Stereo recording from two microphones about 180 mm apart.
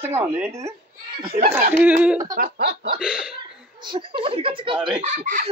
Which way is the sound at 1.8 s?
10° right (ahead or behind).